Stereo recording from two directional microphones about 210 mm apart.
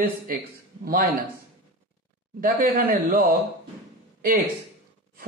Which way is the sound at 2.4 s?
45° right (ahead or behind).